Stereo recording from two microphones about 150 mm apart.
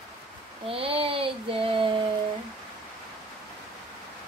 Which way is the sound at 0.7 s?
40° right (ahead or behind).